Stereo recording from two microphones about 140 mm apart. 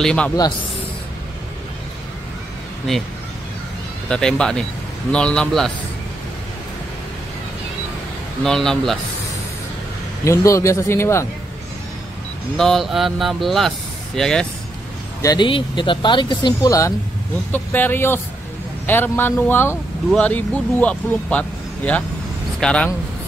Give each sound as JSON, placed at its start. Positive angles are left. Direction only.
{"t": 0.0, "sound": "speech", "side_deg": 5}
{"t": 4.1, "sound": "speech", "side_deg": 5}
{"t": 8.4, "sound": "speech", "side_deg": 5}
{"t": 10.2, "sound": "speech", "side_deg": 20}
{"t": 12.5, "sound": "speech", "side_deg": 0}
{"t": 15.2, "sound": "speech", "side_deg": 35}
{"t": 17.5, "sound": "speech", "side_deg": 15}